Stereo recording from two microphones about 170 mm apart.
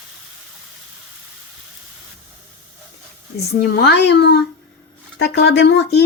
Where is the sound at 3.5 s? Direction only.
70° left (ahead or behind).